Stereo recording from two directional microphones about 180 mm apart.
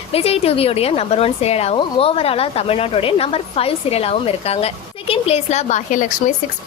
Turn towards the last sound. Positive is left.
turn(degrees=45)  # may be behind; listen again after turning